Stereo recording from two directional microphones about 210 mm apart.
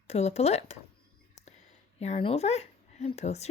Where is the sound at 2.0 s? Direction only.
30° left (ahead or behind).